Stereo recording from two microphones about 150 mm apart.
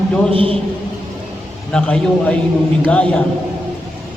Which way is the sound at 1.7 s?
10° left (ahead or behind).